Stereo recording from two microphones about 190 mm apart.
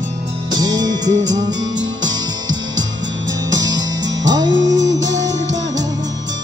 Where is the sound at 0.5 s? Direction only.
20° right (ahead or behind).